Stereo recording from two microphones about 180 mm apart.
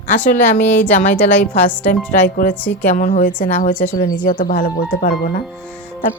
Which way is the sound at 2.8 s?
45° left (ahead or behind).